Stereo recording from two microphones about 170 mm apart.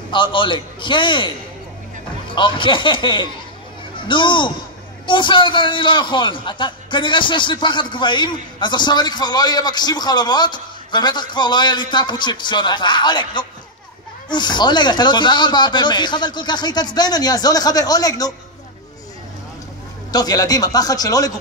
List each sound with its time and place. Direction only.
0.1 s a man's voice: 30° left (ahead or behind)
20.1 s a man's voice: 25° left (ahead or behind)